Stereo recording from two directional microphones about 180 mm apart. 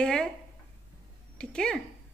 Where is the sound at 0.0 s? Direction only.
5° left (ahead or behind).